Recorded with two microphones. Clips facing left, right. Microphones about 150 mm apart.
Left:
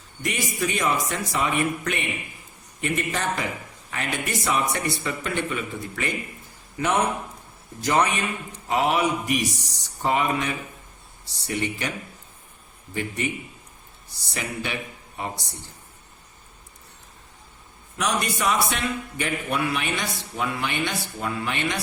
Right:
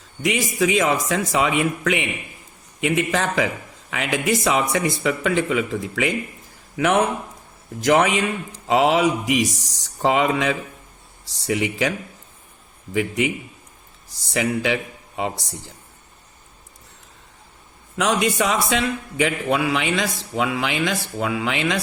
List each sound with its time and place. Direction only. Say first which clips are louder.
0.2 s a man's voice: right 6 dB; 90° right
17.9 s a man's voice: right 6 dB; 90° right